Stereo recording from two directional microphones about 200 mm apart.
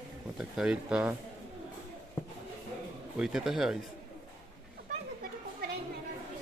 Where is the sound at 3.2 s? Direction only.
5° right (ahead or behind).